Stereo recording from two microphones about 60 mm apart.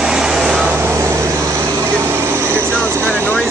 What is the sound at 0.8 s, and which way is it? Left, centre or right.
Vehicle, right.